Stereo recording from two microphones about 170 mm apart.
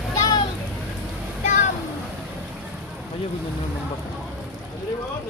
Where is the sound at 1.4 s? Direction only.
45° left (ahead or behind).